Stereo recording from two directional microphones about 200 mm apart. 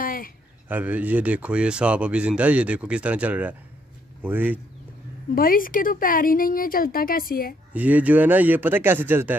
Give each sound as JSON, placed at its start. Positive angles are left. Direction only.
{"t": 0.0, "sound": "a sound", "side_deg": 45}
{"t": 0.7, "sound": "speech", "side_deg": -10}
{"t": 5.3, "sound": "a woman's voice", "side_deg": 45}
{"t": 7.7, "sound": "speech", "side_deg": -5}